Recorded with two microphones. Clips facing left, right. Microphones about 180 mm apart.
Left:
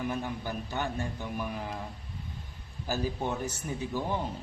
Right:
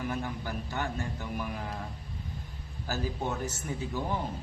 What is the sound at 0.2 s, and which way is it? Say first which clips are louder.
Speech: left 1 dB; 15° left (ahead or behind).